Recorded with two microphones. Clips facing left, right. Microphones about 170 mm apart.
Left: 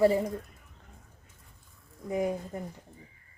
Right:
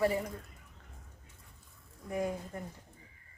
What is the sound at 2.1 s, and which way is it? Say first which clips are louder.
Speech: left 5 dB; 20° left (ahead or behind).